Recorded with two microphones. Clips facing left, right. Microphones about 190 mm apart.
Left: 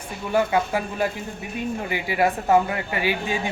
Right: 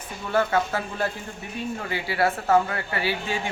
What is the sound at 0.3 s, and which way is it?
A man's voice, 15° left (ahead or behind).